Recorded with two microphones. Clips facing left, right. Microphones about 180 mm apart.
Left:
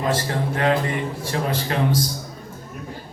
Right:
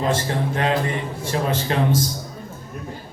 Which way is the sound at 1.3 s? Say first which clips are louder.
Right 3 dB; 25° right (ahead or behind).